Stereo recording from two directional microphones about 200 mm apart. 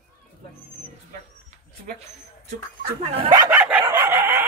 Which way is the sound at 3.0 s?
30° right (ahead or behind).